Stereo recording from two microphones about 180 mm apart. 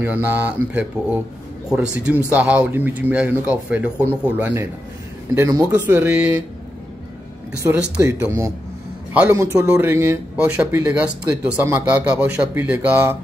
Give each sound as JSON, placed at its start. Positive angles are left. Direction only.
{"t": 0.0, "sound": "speech", "side_deg": -10}
{"t": 7.6, "sound": "speech", "side_deg": -10}